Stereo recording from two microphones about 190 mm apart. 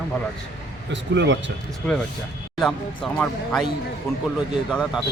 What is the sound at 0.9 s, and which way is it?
Speech, 70° right (ahead or behind).